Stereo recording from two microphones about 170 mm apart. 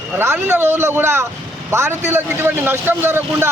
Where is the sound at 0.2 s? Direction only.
15° right (ahead or behind).